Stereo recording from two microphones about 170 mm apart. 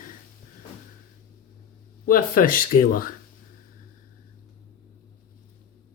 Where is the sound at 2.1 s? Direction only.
55° left (ahead or behind).